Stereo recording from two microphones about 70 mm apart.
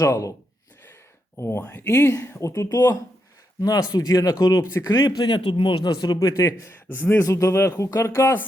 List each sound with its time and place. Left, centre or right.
0.0 s a man's voice: left
1.4 s speech: left
2.5 s speech: left
4.9 s speech: left
6.2 s a man's voice: left
6.7 s a man's voice: left
7.2 s a man's voice: left